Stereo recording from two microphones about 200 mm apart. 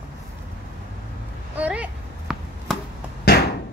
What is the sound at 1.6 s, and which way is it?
Chop, 5° right (ahead or behind).